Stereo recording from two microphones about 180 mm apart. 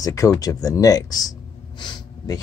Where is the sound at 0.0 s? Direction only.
20° left (ahead or behind).